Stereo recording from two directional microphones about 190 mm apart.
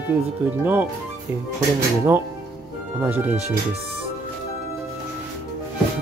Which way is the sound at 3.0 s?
10° right (ahead or behind).